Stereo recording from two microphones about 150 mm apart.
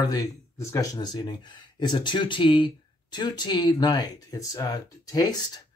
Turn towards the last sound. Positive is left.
turn(degrees=25)  # may be behind; listen again after turning